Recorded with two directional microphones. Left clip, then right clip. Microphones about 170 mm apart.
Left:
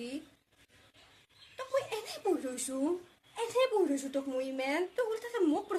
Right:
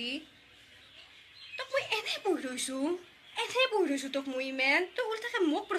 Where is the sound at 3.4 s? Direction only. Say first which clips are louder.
Right 1 dB; 15° left (ahead or behind).